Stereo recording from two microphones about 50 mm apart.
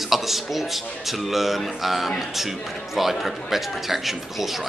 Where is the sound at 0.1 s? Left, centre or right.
Centre.